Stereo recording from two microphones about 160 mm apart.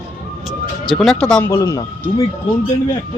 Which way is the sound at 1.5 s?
20° left (ahead or behind).